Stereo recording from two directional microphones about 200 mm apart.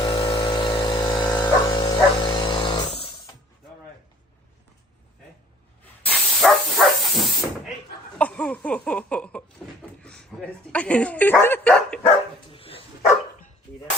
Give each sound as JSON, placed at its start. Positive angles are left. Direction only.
{"t": 0.0, "sound": "dog", "side_deg": 25}
{"t": 6.1, "sound": "dog", "side_deg": 0}
{"t": 8.2, "sound": "a sound", "side_deg": 5}
{"t": 10.0, "sound": "dog", "side_deg": 5}
{"t": 12.5, "sound": "dog", "side_deg": 30}